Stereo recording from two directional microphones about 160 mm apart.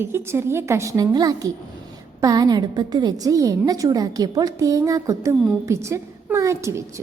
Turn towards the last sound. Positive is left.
turn(degrees=-20)  # may be behind; listen again after turning